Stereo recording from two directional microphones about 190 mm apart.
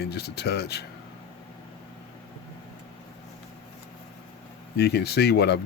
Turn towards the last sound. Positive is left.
turn(degrees=60)  # may be behind; listen again after turning